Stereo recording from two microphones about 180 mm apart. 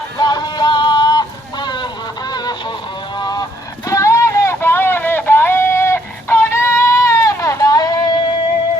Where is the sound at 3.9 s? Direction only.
15° left (ahead or behind).